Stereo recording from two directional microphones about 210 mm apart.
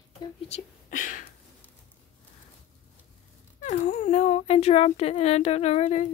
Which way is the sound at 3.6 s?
35° left (ahead or behind).